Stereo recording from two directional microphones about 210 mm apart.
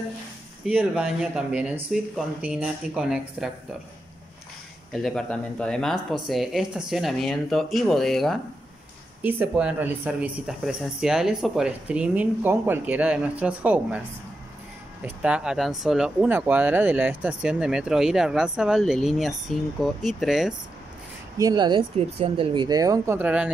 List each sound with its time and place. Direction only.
0.7 s speech: 5° right (ahead or behind)
4.9 s speech: centre (ahead or behind)
15.0 s speech: 5° right (ahead or behind)
21.4 s speech: 20° right (ahead or behind)